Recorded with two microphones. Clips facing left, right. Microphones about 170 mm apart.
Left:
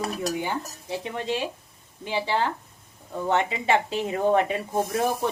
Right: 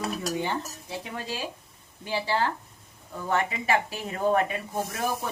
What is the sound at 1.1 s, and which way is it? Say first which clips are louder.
Speech: left 7 dB; 20° left (ahead or behind).